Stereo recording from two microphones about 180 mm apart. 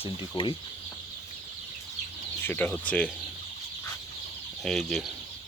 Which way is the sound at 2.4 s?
10° left (ahead or behind).